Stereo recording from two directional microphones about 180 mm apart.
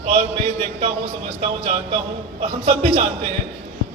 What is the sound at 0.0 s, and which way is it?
A man's voice, 35° right (ahead or behind).